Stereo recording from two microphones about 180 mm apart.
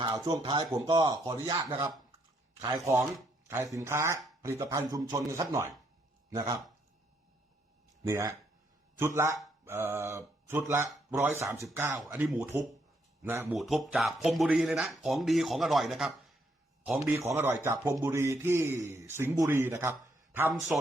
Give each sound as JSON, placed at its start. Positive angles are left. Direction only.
{"t": 0.0, "sound": "speech", "side_deg": -20}
{"t": 8.0, "sound": "speech", "side_deg": -15}
{"t": 13.5, "sound": "speech", "side_deg": 0}
{"t": 17.1, "sound": "speech", "side_deg": -15}